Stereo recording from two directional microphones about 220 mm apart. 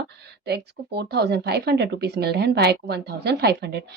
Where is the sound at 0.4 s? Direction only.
50° right (ahead or behind).